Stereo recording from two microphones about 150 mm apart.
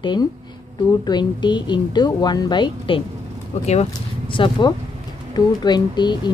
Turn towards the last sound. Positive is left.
turn(degrees=30)  # may be behind; listen again after turning